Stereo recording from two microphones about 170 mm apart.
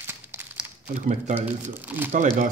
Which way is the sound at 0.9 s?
45° right (ahead or behind).